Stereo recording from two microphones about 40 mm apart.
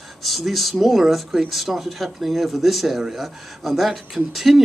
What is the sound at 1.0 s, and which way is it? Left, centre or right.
Speech, centre.